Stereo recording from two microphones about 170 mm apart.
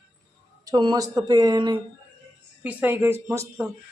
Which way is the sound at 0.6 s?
20° right (ahead or behind).